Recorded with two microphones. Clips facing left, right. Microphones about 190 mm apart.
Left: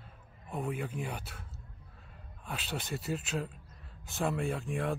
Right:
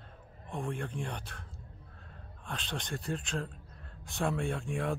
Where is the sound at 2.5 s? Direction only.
5° left (ahead or behind).